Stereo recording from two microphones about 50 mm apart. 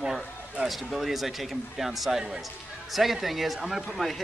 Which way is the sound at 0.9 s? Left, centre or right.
Centre.